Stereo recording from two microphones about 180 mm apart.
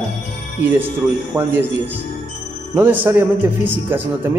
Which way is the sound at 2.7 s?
10° right (ahead or behind).